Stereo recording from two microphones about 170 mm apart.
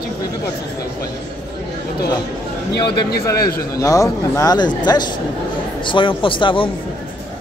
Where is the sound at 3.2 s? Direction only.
20° left (ahead or behind).